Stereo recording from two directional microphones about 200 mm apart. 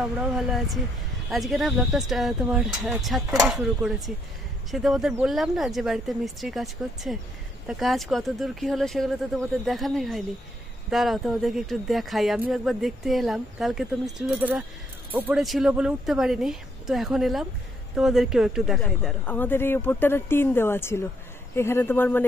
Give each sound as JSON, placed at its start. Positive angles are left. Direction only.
{"t": 0.0, "sound": "speech", "side_deg": 0}